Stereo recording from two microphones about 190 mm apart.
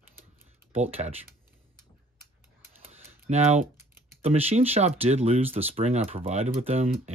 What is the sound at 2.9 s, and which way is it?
Typing, 35° right (ahead or behind).